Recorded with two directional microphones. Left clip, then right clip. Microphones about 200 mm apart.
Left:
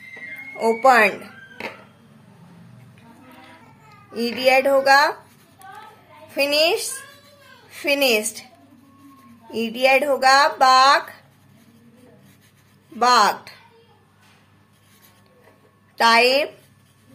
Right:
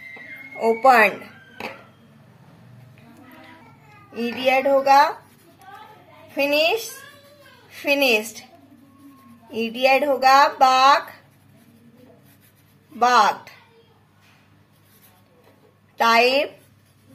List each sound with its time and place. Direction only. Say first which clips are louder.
0.6 s speech: even; 15° left (ahead or behind)
4.1 s speech: left 3 dB; 25° left (ahead or behind)
6.3 s a woman's voice: left 1 dB; 25° left (ahead or behind)
9.5 s speech: left 1 dB; 15° left (ahead or behind)
16.0 s speech: left 1 dB; 20° left (ahead or behind)